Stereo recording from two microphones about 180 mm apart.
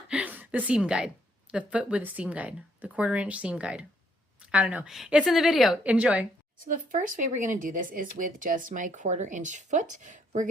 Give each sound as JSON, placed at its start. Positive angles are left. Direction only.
{"t": 0.1, "sound": "a woman's voice", "side_deg": -10}
{"t": 6.7, "sound": "speech", "side_deg": -45}